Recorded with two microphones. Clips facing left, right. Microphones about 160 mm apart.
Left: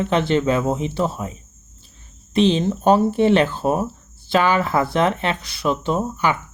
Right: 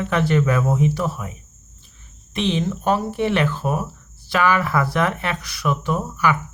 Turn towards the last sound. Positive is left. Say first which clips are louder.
# left 1 dB
turn(degrees=25)  # may be behind; listen again after turning